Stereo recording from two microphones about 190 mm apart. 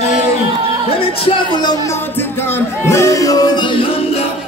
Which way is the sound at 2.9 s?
15° left (ahead or behind).